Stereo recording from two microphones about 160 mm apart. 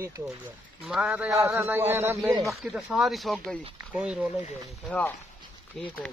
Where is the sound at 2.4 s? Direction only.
5° right (ahead or behind).